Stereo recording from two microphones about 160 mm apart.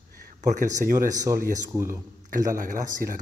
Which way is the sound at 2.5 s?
55° right (ahead or behind).